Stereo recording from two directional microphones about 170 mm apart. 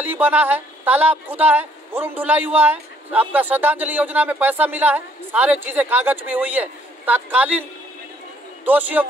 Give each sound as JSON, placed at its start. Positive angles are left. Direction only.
{"t": 0.0, "sound": "speech", "side_deg": -10}
{"t": 8.6, "sound": "speech", "side_deg": -10}